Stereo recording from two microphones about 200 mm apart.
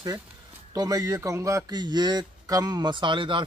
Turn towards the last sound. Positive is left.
turn(degrees=-25)  # may be behind; listen again after turning